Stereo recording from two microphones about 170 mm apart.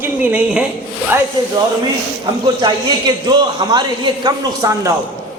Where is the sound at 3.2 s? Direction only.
25° right (ahead or behind).